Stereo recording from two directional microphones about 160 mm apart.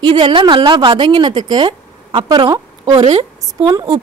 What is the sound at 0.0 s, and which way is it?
A woman's voice, 35° right (ahead or behind).